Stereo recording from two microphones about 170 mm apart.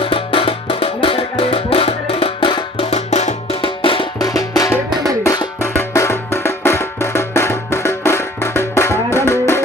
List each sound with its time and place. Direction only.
0.0 s music: 30° left (ahead or behind); by 9.6 s 15° left (ahead or behind)